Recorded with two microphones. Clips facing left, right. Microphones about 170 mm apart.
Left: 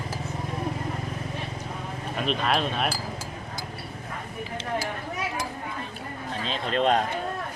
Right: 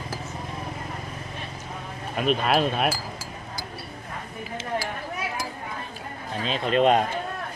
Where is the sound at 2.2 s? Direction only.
5° right (ahead or behind).